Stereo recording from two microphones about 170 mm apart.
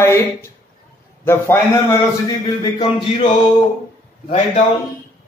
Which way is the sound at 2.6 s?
30° left (ahead or behind).